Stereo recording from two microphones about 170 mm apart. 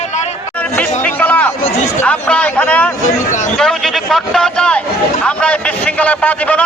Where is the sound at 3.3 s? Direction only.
45° left (ahead or behind).